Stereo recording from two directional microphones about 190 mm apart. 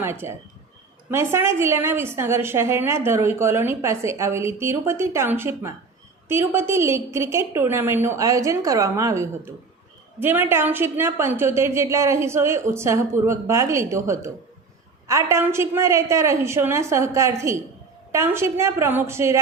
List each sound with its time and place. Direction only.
0.0 s a woman's voice: 15° right (ahead or behind)